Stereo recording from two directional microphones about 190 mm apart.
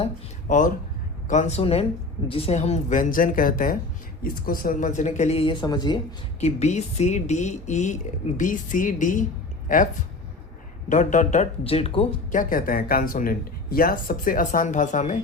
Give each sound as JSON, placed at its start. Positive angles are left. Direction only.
{"t": 0.0, "sound": "speech", "side_deg": 40}
{"t": 6.4, "sound": "speech", "side_deg": 35}
{"t": 12.3, "sound": "speech", "side_deg": 45}